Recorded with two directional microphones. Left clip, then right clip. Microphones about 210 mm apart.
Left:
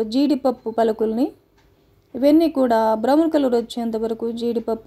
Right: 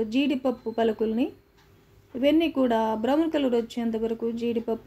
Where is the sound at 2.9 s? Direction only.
35° left (ahead or behind).